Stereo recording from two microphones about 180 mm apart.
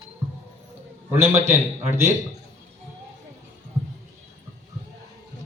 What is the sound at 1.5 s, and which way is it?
Speech, 15° right (ahead or behind).